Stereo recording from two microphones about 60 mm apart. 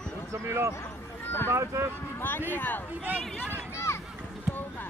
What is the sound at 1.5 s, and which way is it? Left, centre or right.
Speech, right.